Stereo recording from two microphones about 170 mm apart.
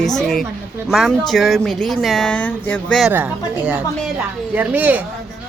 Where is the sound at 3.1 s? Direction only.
10° right (ahead or behind).